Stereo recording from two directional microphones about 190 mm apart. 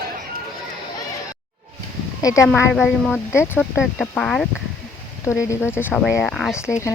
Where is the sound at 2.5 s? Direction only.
5° left (ahead or behind).